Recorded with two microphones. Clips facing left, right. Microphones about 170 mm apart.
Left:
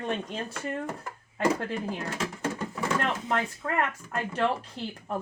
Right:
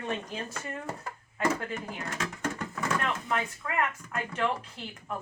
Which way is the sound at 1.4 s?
30° left (ahead or behind).